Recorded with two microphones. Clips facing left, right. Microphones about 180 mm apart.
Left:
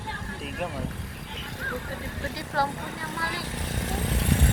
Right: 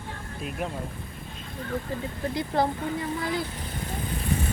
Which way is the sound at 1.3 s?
85° left.